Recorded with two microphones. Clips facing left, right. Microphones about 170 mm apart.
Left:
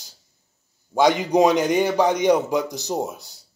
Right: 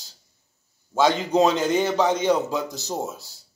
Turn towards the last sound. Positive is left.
turn(degrees=20)  # may be behind; listen again after turning